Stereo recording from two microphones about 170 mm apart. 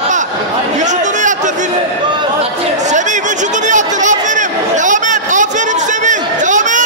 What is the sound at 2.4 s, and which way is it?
Chatter, 45° right (ahead or behind).